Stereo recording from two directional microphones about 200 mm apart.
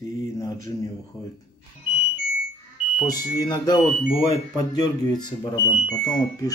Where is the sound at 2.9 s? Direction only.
20° left (ahead or behind).